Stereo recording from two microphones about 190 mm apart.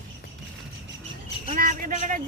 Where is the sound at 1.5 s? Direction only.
45° right (ahead or behind).